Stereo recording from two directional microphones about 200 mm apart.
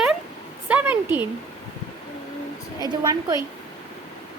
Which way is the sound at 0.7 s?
10° right (ahead or behind).